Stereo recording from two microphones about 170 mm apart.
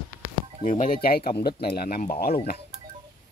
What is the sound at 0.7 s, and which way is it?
Speech, 55° left (ahead or behind).